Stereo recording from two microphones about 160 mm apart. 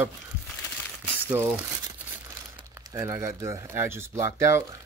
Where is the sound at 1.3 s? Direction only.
15° right (ahead or behind).